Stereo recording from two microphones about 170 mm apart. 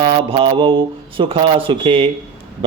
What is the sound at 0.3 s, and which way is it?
A man's voice, 30° right (ahead or behind).